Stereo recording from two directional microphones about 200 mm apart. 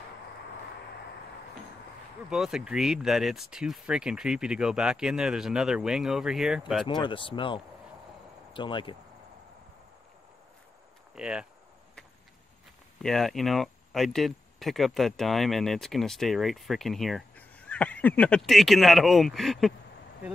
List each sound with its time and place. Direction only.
2.2 s speech: 5° right (ahead or behind)
6.9 s speech: 25° left (ahead or behind)
11.1 s speech: 5° right (ahead or behind)
13.0 s speech: centre (ahead or behind)